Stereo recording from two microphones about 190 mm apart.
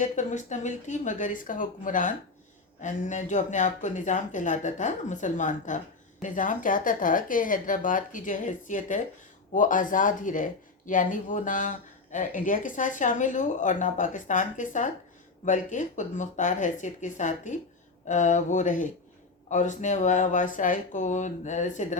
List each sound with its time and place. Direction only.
0.0 s speech: 40° left (ahead or behind)